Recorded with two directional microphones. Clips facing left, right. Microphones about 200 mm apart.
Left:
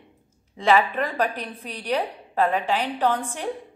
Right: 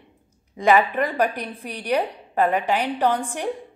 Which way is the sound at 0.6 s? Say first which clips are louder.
Right 2 dB; 15° right (ahead or behind).